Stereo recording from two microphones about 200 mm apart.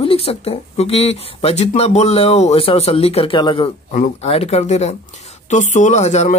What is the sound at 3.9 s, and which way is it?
Speech, 35° left (ahead or behind).